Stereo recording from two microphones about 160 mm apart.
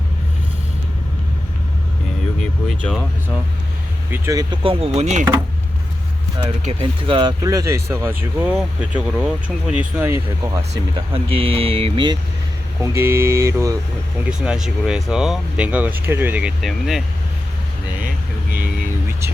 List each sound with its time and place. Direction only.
2.8 s speech: 5° left (ahead or behind)
4.1 s speech: 20° right (ahead or behind); by 5.2 s 45° right (ahead or behind)
6.7 s speech: 35° right (ahead or behind); by 10.1 s 5° right (ahead or behind)
10.1 s speech: 20° right (ahead or behind)
11.1 s speech: 35° right (ahead or behind)
12.8 s speech: 15° right (ahead or behind)
14.3 s speech: 5° right (ahead or behind)
18.6 s vehicle: 15° right (ahead or behind)